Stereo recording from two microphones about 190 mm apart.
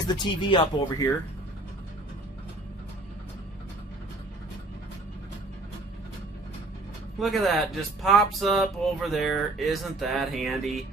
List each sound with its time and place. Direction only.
0.1 s speech: 25° left (ahead or behind)
7.2 s speech: centre (ahead or behind)